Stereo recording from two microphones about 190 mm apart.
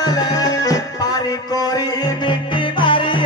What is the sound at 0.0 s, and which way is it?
Music, 20° left (ahead or behind).